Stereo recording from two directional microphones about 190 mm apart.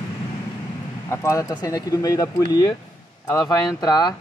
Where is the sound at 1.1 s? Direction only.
15° left (ahead or behind).